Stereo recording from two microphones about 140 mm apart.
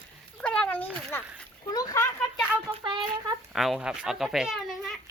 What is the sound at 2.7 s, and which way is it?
Speech, 35° right (ahead or behind).